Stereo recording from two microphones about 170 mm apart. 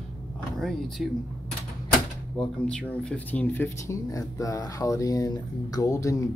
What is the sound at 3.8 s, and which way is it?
Speech, 20° left (ahead or behind).